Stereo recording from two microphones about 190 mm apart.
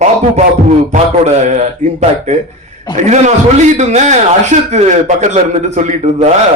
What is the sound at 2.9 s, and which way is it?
A man's voice, 40° right (ahead or behind).